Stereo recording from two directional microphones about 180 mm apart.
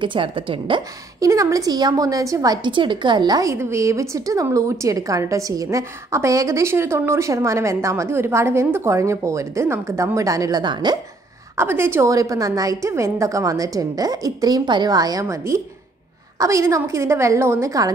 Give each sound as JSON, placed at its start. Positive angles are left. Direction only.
{"t": 0.0, "sound": "a woman's voice", "side_deg": -30}
{"t": 11.5, "sound": "a woman's voice", "side_deg": -15}